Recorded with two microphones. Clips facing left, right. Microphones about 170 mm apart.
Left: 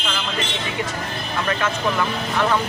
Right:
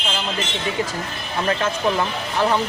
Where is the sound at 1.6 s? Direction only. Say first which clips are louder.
Right 1 dB; 30° right (ahead or behind).